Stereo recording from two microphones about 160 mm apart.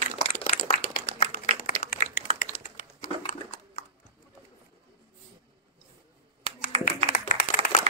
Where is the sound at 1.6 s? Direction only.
65° left (ahead or behind).